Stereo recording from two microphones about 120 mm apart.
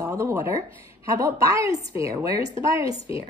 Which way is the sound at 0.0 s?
25° right (ahead or behind).